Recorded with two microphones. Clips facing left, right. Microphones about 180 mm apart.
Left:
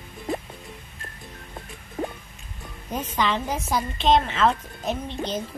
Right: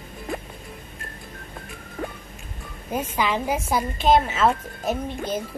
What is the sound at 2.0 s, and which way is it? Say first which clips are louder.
Music: left 2 dB; 25° left (ahead or behind).